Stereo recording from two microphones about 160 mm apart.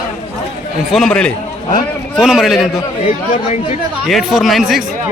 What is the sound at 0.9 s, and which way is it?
A man's voice, 5° left (ahead or behind).